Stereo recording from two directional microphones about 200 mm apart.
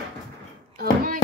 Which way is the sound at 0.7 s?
45° right (ahead or behind).